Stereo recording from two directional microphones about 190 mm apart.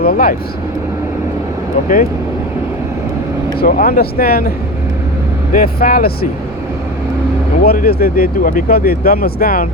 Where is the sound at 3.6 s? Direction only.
50° left (ahead or behind).